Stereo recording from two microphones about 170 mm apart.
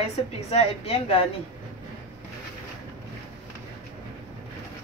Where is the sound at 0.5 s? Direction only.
35° left (ahead or behind).